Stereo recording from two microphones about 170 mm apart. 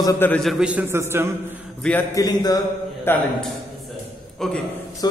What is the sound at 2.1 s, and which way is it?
A man's voice, 20° left (ahead or behind).